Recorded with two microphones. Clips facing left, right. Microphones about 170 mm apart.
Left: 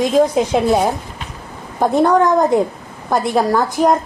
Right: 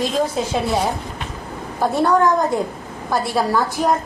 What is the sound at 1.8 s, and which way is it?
A woman's voice, 20° left (ahead or behind).